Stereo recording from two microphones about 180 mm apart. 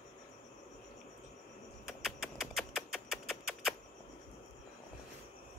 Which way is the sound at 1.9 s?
Centre (ahead or behind).